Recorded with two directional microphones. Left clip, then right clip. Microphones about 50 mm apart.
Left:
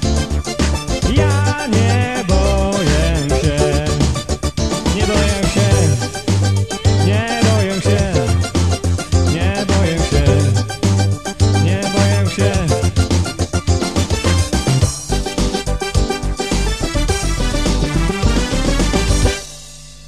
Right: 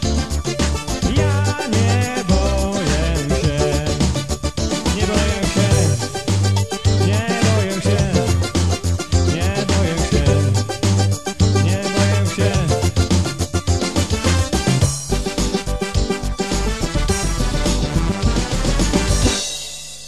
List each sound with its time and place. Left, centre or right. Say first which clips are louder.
1.1 s music: left 4 dB; right
3.1 s music: left 3 dB; right
7.6 s music: left 3 dB; right
8.0 s music: left 2 dB; right
9.1 s music: left 2 dB; right; by 14.9 s centre
18.3 s music: left 4 dB; right